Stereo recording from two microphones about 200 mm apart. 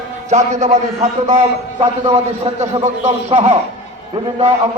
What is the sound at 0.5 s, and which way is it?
A man's voice, 35° right (ahead or behind).